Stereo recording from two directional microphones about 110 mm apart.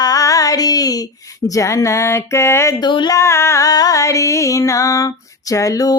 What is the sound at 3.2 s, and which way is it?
Music, 25° left (ahead or behind).